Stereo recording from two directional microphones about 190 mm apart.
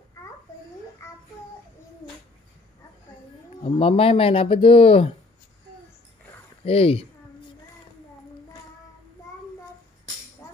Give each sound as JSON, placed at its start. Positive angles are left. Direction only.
{"t": 3.6, "sound": "speech", "side_deg": 30}
{"t": 6.6, "sound": "speech", "side_deg": 30}
{"t": 10.4, "sound": "music", "side_deg": 15}